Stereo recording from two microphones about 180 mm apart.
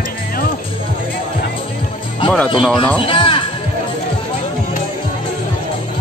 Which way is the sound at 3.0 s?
30° left (ahead or behind).